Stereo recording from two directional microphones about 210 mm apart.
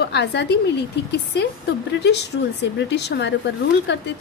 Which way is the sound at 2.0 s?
55° left (ahead or behind).